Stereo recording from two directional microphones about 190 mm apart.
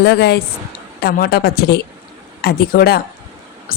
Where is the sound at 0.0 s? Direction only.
60° left (ahead or behind).